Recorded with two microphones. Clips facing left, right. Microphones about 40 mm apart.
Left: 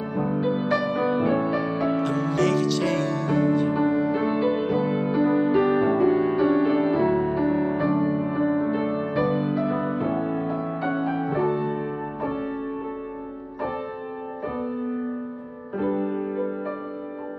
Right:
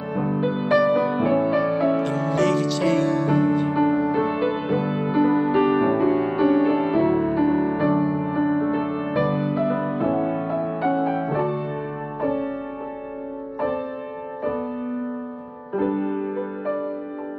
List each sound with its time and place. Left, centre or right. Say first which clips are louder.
0.1 s music: right 2 dB; centre
6.5 s music: right 2 dB; right; by 9.5 s centre
9.5 s music: right 2 dB; right
9.8 s music: right 3 dB; centre
15.7 s music: right 2 dB; centre